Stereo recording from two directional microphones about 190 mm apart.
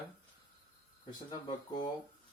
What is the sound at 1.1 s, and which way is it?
Speech, 20° left (ahead or behind).